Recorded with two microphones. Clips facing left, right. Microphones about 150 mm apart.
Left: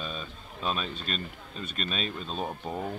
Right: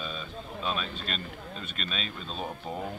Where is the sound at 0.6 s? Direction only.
40° left (ahead or behind).